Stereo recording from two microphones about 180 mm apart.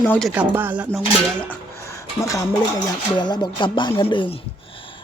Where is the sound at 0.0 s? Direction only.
5° left (ahead or behind).